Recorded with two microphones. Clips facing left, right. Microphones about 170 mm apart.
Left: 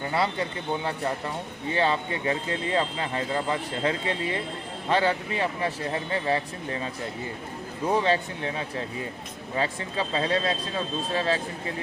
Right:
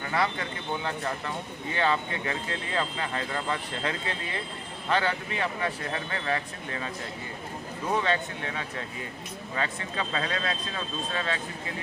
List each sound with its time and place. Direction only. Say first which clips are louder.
0.1 s speech: left 1 dB; 30° left (ahead or behind)
1.7 s speech: left 2 dB; 30° left (ahead or behind)
7.9 s speech: left 3 dB; 30° left (ahead or behind)